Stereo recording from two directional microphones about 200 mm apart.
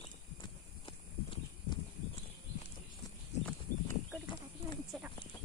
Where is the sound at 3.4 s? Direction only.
10° left (ahead or behind).